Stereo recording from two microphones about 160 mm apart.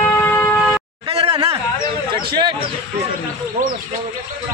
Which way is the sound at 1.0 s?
35° right (ahead or behind).